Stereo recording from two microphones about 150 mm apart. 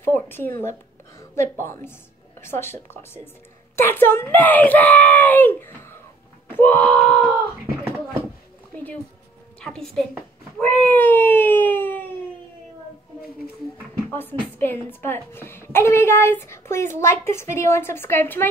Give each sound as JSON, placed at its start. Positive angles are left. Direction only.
{"t": 0.0, "sound": "a woman's voice", "side_deg": 15}
{"t": 9.6, "sound": "a woman's voice", "side_deg": 5}
{"t": 14.1, "sound": "a woman's voice", "side_deg": 15}